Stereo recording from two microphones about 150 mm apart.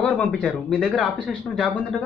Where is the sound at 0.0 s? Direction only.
5° left (ahead or behind).